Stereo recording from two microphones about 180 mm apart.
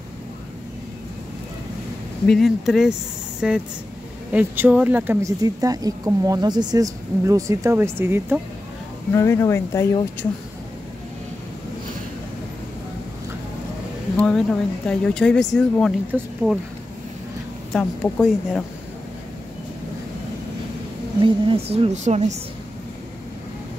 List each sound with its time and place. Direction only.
2.2 s speech: centre (ahead or behind)
9.1 s speech: 15° left (ahead or behind)
14.1 s speech: 5° left (ahead or behind)
17.7 s speech: 5° left (ahead or behind)
21.2 s a woman's voice: 30° right (ahead or behind)